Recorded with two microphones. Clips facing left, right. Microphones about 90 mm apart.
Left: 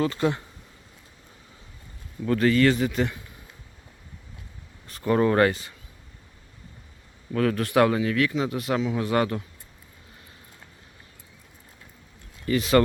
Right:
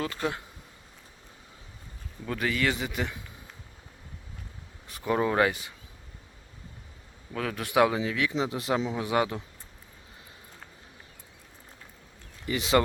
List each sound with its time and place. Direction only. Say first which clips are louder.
0.0 s speech: left 7 dB; centre (ahead or behind)
2.2 s speech: left 8 dB; 5° right (ahead or behind)
4.9 s speech: left 5 dB; 10° right (ahead or behind)
7.3 s speech: left 4 dB; 10° right (ahead or behind)
12.5 s speech: left 4 dB; 20° right (ahead or behind)